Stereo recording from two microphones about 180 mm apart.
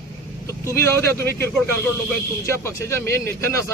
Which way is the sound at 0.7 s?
15° left (ahead or behind).